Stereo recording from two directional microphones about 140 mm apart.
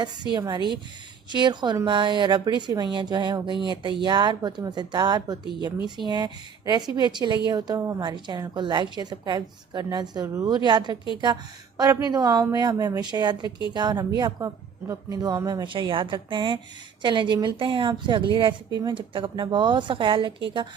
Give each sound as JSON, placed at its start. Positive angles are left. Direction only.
{"t": 0.3, "sound": "a woman's voice", "side_deg": -30}
{"t": 13.4, "sound": "a woman's voice", "side_deg": 35}
{"t": 13.7, "sound": "a woman's voice", "side_deg": -30}